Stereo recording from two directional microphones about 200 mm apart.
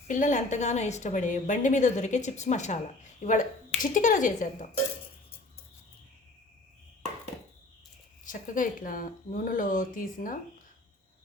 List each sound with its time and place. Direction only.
0.1 s a woman's voice: 40° left (ahead or behind)
8.2 s a woman's voice: 40° left (ahead or behind)